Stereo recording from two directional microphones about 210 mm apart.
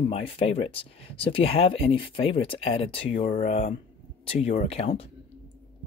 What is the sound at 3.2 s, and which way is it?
Speech, 40° left (ahead or behind).